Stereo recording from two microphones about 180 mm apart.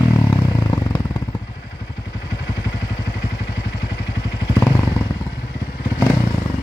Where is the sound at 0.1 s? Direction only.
20° left (ahead or behind).